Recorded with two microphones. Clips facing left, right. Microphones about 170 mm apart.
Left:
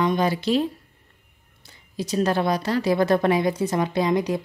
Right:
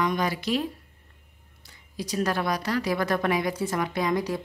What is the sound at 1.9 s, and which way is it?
A woman's voice, 25° left (ahead or behind).